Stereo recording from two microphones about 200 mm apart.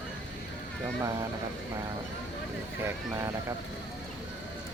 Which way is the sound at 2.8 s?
15° right (ahead or behind).